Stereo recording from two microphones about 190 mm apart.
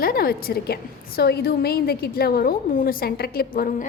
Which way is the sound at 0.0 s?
50° left (ahead or behind).